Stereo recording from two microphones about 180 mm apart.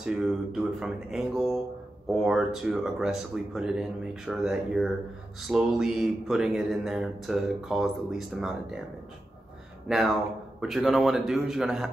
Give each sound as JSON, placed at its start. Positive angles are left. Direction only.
{"t": 0.0, "sound": "speech", "side_deg": -5}
{"t": 9.8, "sound": "speech", "side_deg": 0}